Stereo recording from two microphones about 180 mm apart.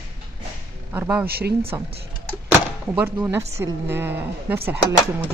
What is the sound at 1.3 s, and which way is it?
Speech, 60° right (ahead or behind).